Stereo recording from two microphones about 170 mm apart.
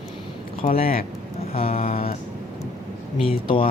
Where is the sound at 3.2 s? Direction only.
30° left (ahead or behind).